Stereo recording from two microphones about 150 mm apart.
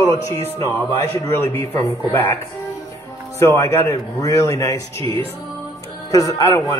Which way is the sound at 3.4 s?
20° left (ahead or behind).